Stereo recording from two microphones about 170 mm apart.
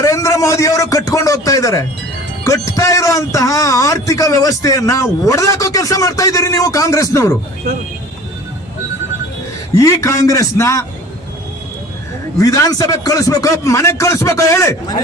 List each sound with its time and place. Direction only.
0.0 s a man's voice: 20° left (ahead or behind)
9.7 s a man's voice: 15° left (ahead or behind)
12.4 s a man's voice: 20° left (ahead or behind)